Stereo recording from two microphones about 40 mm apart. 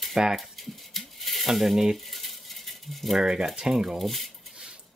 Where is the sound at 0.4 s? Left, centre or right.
Centre.